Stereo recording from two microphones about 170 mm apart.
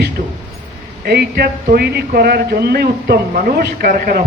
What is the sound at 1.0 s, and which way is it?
Speech, 70° right (ahead or behind).